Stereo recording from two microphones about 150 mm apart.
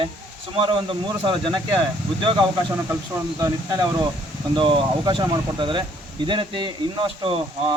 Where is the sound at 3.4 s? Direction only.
25° right (ahead or behind).